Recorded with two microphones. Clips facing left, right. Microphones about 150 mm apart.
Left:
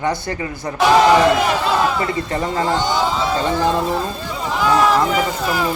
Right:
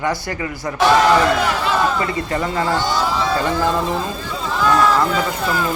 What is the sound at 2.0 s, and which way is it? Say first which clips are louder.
A man's voice: even; 25° left (ahead or behind).